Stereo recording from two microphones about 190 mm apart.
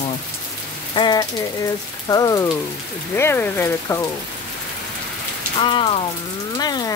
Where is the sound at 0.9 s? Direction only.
20° left (ahead or behind).